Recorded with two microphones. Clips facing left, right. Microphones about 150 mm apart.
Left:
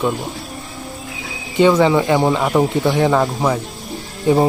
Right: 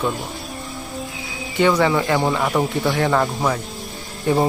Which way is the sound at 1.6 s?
20° left (ahead or behind).